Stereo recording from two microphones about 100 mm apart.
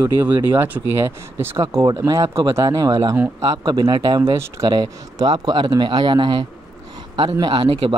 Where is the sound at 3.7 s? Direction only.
50° right (ahead or behind).